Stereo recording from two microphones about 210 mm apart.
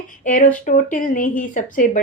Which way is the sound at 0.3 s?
40° left (ahead or behind).